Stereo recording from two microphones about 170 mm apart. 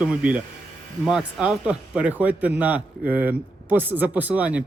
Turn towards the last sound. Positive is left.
turn(degrees=-10)  # may be behind; listen again after turning